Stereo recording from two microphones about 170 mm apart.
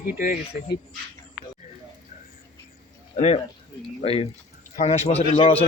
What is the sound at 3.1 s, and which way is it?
Speech, 40° left (ahead or behind).